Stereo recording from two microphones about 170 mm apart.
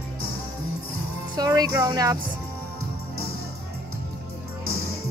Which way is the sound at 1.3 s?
20° right (ahead or behind).